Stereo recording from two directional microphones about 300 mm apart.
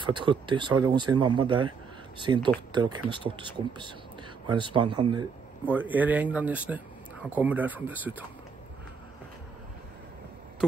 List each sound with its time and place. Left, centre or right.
0.0 s speech: centre